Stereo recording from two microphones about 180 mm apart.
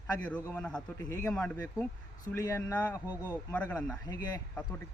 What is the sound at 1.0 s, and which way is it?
Speech, 20° left (ahead or behind).